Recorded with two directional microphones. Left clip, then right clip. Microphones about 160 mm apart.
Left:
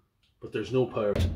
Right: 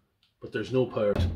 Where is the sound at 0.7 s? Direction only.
20° right (ahead or behind).